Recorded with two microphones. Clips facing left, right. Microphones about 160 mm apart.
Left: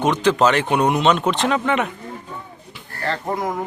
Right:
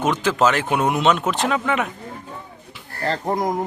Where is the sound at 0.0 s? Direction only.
5° right (ahead or behind).